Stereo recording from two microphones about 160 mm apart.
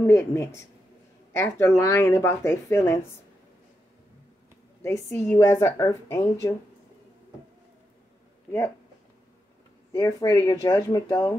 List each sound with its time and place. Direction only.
0.0 s speech: 15° left (ahead or behind)
4.8 s speech: 15° left (ahead or behind)
8.5 s speech: 15° left (ahead or behind)
9.9 s speech: 20° left (ahead or behind)